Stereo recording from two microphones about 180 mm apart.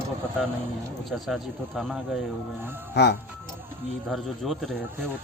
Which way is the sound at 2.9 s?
70° left (ahead or behind).